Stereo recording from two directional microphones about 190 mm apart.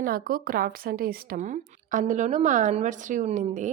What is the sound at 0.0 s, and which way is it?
A woman's voice, 50° right (ahead or behind).